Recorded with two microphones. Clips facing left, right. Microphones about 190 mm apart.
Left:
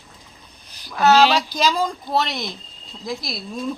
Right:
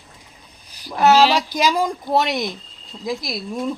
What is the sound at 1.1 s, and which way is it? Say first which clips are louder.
Speech: left 1 dB; 5° right (ahead or behind).